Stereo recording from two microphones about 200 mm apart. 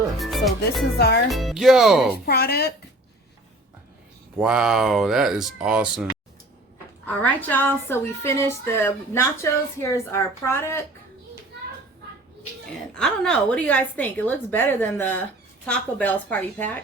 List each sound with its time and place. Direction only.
0.2 s speech: centre (ahead or behind)
0.9 s speech: 55° left (ahead or behind)
1.3 s speech: centre (ahead or behind)
2.2 s speech: 50° left (ahead or behind)
4.4 s speech: 5° right (ahead or behind)
7.1 s a woman's voice: 5° left (ahead or behind)
12.9 s a woman's voice: 5° left (ahead or behind)